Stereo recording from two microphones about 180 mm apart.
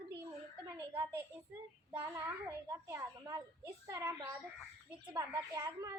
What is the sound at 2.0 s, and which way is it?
A child's voice, 10° right (ahead or behind).